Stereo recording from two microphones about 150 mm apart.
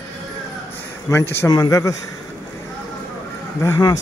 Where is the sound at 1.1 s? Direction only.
20° left (ahead or behind).